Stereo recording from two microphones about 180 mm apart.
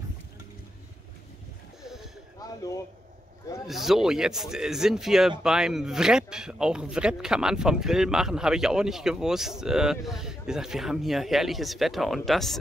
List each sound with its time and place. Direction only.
1.8 s a sound: centre (ahead or behind)
2.4 s speech: 20° left (ahead or behind)
3.6 s speech: centre (ahead or behind)